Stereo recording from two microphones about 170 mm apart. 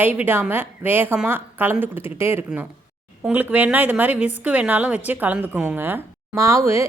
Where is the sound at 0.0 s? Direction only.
10° right (ahead or behind).